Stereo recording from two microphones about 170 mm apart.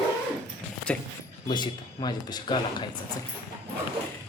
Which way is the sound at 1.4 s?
25° left (ahead or behind).